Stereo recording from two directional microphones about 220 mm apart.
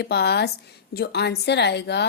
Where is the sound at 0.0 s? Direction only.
50° left (ahead or behind).